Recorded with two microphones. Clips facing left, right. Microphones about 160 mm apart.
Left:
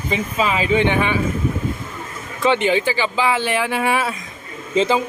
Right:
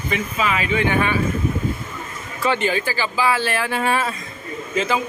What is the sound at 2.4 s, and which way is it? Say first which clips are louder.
A man's voice: left 4 dB; 20° left (ahead or behind).